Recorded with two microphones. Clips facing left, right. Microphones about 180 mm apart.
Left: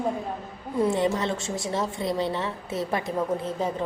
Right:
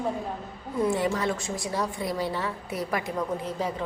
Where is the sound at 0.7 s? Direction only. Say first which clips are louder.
Left 2 dB; 20° left (ahead or behind).